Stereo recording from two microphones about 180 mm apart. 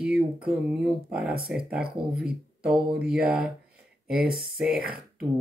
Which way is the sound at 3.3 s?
5° right (ahead or behind).